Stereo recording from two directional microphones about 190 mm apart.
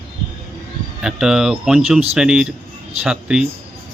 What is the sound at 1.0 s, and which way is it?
A man's voice, 5° right (ahead or behind).